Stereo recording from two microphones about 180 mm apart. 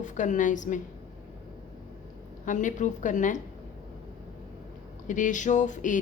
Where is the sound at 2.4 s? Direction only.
45° left (ahead or behind).